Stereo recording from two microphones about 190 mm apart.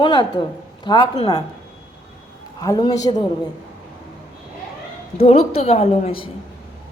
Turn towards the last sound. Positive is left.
turn(degrees=30)  # may be behind; listen again after turning